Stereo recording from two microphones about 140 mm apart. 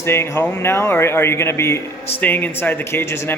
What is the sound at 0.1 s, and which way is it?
Speech, 15° left (ahead or behind).